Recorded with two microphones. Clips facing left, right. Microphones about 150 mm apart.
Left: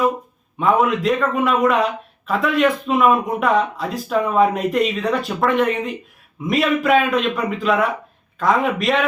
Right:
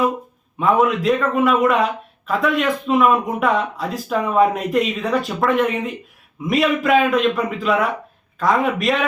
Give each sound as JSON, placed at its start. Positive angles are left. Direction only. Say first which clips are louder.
{"t": 0.6, "sound": "speech", "louder": "even", "side_deg": 0}